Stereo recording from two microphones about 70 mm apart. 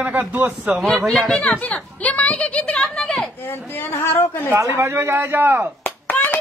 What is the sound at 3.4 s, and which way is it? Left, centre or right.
Speech, left.